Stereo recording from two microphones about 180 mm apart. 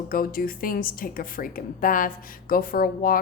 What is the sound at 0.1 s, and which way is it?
A woman's voice, 55° left (ahead or behind).